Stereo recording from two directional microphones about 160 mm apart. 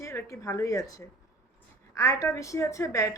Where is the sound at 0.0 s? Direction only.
20° left (ahead or behind).